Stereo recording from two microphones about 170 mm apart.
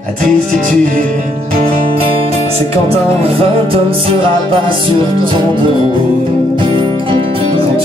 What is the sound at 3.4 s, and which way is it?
Music, 35° right (ahead or behind).